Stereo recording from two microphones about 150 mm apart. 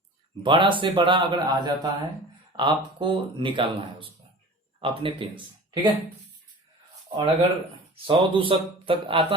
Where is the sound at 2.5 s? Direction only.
30° right (ahead or behind).